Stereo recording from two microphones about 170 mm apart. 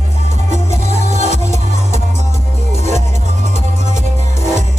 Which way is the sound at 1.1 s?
45° right (ahead or behind).